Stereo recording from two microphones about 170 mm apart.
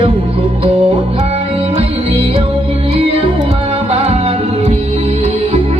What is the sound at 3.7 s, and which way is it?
Music, 35° right (ahead or behind).